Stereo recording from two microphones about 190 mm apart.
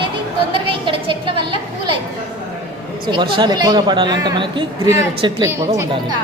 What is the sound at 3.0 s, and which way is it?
A man's voice, 25° right (ahead or behind).